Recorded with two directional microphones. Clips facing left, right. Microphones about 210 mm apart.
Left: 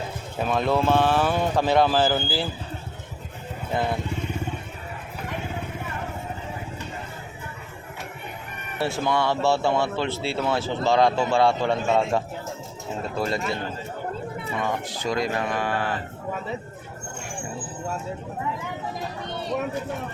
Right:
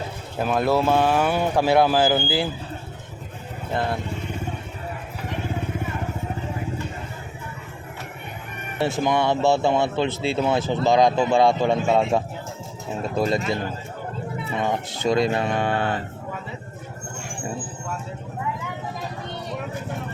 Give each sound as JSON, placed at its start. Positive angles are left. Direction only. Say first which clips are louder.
{"t": 0.3, "sound": "speech", "louder": "right 2 dB", "side_deg": -5}
{"t": 8.8, "sound": "speech", "louder": "right 3 dB", "side_deg": -15}
{"t": 14.6, "sound": "speech", "louder": "right 4 dB", "side_deg": -25}